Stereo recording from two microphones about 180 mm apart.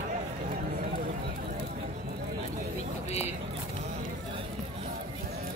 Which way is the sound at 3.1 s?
35° left (ahead or behind).